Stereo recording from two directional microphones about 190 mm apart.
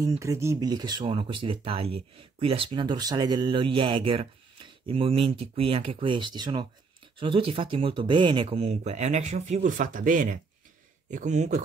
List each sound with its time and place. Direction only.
0.2 s speech: 15° right (ahead or behind); by 11.6 s 40° right (ahead or behind)